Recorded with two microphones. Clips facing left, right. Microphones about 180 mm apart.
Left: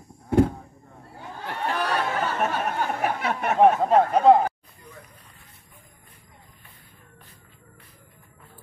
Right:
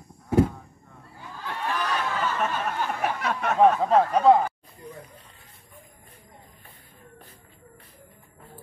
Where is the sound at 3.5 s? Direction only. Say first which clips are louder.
Left 1 dB; 20° left (ahead or behind).